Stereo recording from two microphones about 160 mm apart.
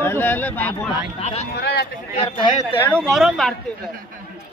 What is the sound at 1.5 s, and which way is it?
Speech, 90° left.